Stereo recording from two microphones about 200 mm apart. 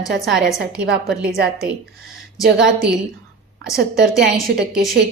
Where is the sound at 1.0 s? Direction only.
5° right (ahead or behind).